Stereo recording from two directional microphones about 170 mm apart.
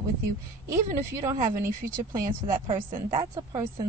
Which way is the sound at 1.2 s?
15° right (ahead or behind).